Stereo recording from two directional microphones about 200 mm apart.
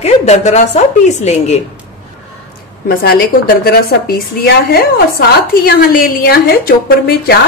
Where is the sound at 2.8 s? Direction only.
50° left (ahead or behind).